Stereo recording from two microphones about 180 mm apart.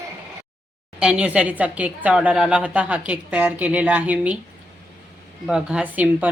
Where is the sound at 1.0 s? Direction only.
5° right (ahead or behind).